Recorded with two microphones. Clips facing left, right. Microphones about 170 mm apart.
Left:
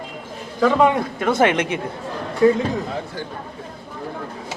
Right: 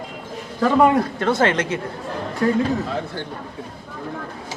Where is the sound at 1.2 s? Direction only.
15° left (ahead or behind).